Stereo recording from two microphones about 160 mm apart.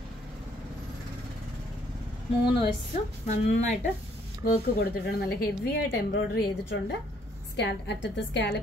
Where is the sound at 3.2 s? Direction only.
50° left (ahead or behind).